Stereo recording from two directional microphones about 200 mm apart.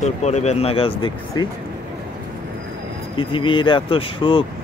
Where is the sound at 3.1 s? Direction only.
25° left (ahead or behind).